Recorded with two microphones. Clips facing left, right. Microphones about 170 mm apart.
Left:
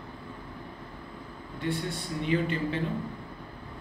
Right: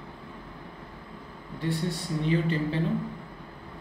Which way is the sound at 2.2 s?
35° right (ahead or behind).